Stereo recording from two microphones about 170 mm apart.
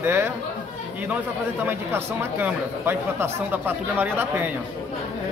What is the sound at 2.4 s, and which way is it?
Speech, 15° right (ahead or behind).